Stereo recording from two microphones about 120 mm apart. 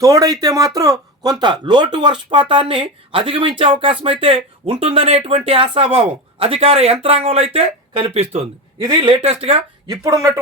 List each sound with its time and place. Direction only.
0.0 s a man's voice: 30° right (ahead or behind); by 9.6 s 55° right (ahead or behind)
9.8 s speech: 30° right (ahead or behind)